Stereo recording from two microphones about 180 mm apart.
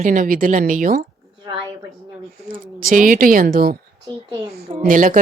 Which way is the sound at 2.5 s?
50° right (ahead or behind).